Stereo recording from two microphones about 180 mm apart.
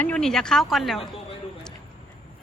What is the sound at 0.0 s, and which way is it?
Speech, 5° left (ahead or behind).